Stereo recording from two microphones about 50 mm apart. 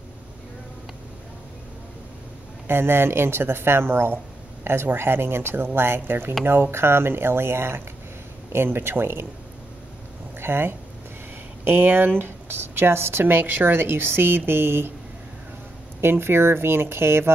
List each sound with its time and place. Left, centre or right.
2.7 s speech: right
10.4 s speech: right
16.0 s speech: right